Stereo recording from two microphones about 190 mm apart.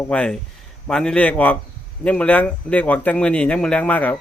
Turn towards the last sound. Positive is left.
turn(degrees=10)  # may be behind; listen again after turning